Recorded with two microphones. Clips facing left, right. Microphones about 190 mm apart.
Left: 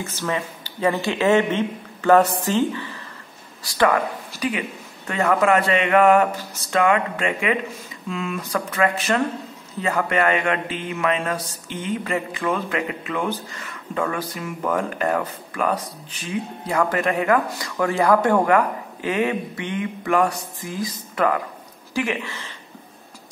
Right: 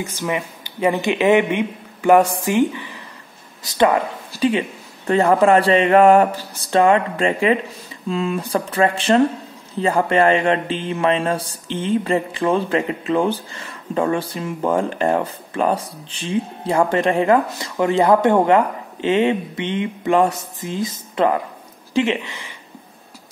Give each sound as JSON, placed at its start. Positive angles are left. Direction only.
{"t": 0.0, "sound": "speech", "side_deg": -15}